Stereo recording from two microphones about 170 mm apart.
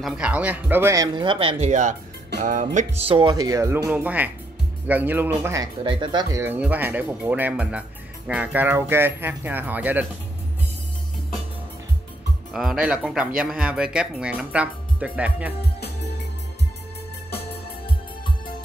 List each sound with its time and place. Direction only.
0.0 s speech: 5° right (ahead or behind); by 2.0 s 45° right (ahead or behind)
2.4 s music: 45° right (ahead or behind)
3.0 s speech: 30° right (ahead or behind)
5.9 s speech: 25° right (ahead or behind)
6.4 s speech: 10° right (ahead or behind)
12.5 s speech: 5° right (ahead or behind)